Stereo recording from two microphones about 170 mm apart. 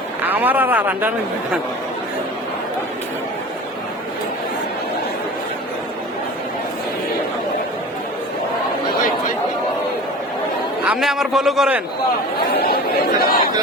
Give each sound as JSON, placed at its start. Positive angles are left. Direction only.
{"t": 0.2, "sound": "a man's voice", "side_deg": -10}
{"t": 10.8, "sound": "a man's voice", "side_deg": -5}
{"t": 12.5, "sound": "speech", "side_deg": 65}